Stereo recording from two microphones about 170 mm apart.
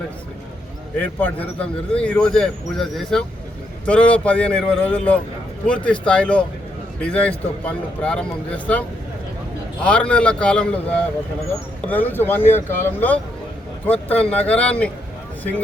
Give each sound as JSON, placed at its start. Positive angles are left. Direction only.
{"t": 0.9, "sound": "speech", "side_deg": 10}
{"t": 9.8, "sound": "speech", "side_deg": 5}
{"t": 11.9, "sound": "speech", "side_deg": 10}